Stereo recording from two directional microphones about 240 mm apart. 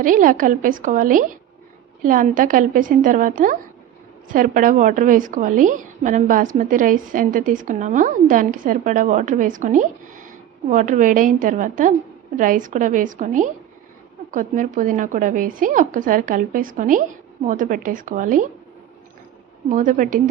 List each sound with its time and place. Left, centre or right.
0.0 s a woman's voice: right
19.7 s a woman's voice: right